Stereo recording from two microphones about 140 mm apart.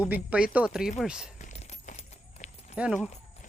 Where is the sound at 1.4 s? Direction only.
55° left (ahead or behind).